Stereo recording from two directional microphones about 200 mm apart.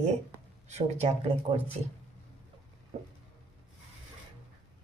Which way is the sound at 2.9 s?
35° right (ahead or behind).